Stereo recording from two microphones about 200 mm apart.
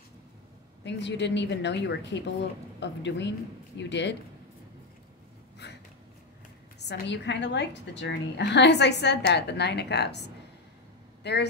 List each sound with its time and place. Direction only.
0.8 s a woman's voice: 60° left (ahead or behind)
5.6 s a sound: 60° left (ahead or behind)
6.8 s a woman's voice: 60° left (ahead or behind)
11.3 s a woman's voice: 55° left (ahead or behind)